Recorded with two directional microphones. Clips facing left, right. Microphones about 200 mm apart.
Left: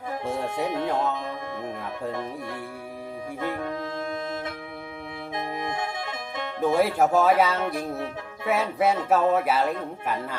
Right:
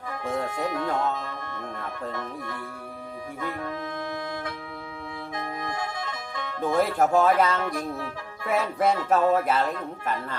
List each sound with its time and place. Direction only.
0.4 s speech: 25° left (ahead or behind)
3.4 s music: 25° left (ahead or behind)
5.4 s music: 25° left (ahead or behind)
6.7 s speech: 5° left (ahead or behind)